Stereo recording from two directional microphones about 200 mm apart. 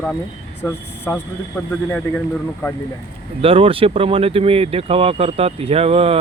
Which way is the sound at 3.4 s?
30° right (ahead or behind).